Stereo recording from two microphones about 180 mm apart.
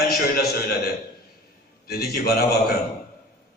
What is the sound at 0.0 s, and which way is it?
A man's voice, 55° left (ahead or behind).